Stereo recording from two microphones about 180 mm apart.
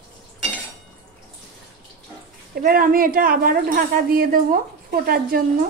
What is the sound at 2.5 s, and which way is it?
A woman's voice, 55° right (ahead or behind).